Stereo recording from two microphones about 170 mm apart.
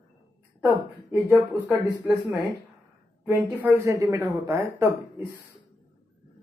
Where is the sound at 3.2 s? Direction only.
15° right (ahead or behind).